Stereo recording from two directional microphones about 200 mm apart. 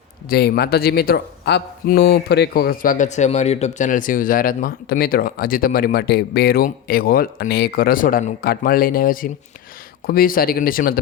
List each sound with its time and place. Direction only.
0.3 s speech: 50° left (ahead or behind)